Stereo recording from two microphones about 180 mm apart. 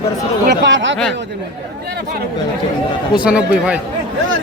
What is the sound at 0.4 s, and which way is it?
Chatter, 70° right (ahead or behind).